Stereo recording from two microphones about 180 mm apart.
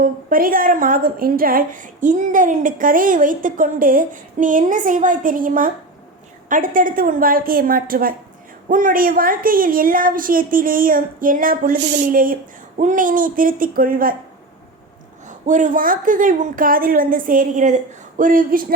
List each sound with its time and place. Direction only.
0.0 s a woman's voice: 50° right (ahead or behind)
15.3 s a woman's voice: 45° right (ahead or behind)